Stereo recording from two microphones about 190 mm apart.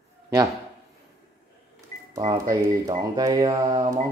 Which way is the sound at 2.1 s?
20° right (ahead or behind).